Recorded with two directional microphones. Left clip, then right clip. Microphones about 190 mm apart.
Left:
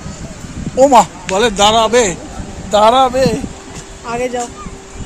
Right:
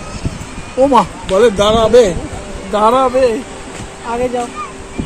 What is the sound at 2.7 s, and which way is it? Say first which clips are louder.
Speech: left 2 dB; 65° left (ahead or behind).